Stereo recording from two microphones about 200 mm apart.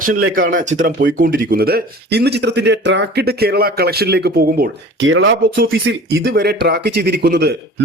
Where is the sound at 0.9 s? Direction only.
50° right (ahead or behind).